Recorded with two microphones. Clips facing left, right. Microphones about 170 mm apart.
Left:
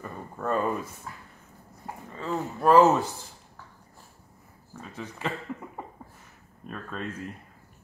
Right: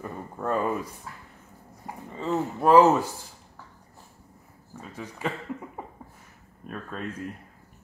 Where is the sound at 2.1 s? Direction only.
20° right (ahead or behind).